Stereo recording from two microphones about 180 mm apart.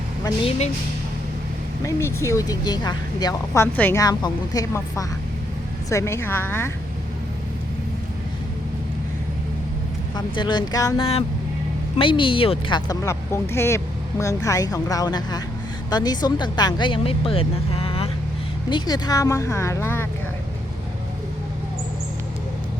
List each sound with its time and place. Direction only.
1.8 s a woman's voice: 15° left (ahead or behind)
10.2 s a woman's voice: 25° left (ahead or behind)